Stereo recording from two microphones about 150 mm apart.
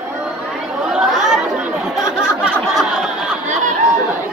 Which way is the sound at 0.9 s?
Centre (ahead or behind).